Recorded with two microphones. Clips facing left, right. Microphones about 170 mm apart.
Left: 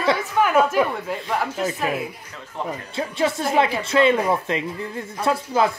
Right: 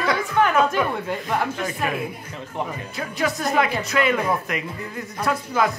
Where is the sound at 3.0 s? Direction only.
25° left (ahead or behind).